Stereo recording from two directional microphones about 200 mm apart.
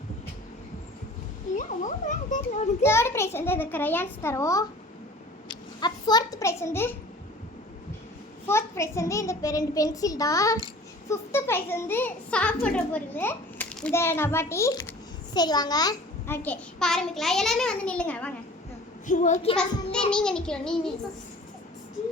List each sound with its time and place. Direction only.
1.5 s a child's voice: 40° left (ahead or behind)
2.8 s a child's voice: 15° left (ahead or behind)
5.5 s a sound: 20° left (ahead or behind)
8.4 s a child's voice: 15° left (ahead or behind)
19.0 s a child's voice: 40° left (ahead or behind)
19.5 s a child's voice: 5° left (ahead or behind)